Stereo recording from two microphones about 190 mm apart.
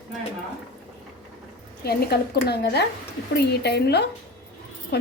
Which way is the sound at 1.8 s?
55° left (ahead or behind).